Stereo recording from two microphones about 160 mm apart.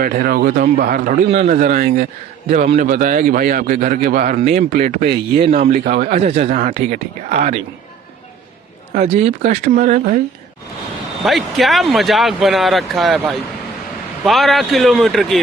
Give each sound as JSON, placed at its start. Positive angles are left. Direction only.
{"t": 0.0, "sound": "a man's voice", "side_deg": -60}
{"t": 1.3, "sound": "a man's voice", "side_deg": -50}
{"t": 4.4, "sound": "speech", "side_deg": -50}
{"t": 9.0, "sound": "speech", "side_deg": -40}
{"t": 11.2, "sound": "speech", "side_deg": 0}